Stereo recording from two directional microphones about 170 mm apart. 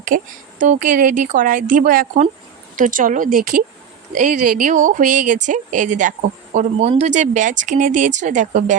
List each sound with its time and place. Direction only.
0.1 s speech: 55° right (ahead or behind)
6.7 s speech: 35° right (ahead or behind)